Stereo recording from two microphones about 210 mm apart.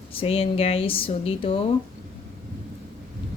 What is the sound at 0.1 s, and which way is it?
Speech, 25° left (ahead or behind).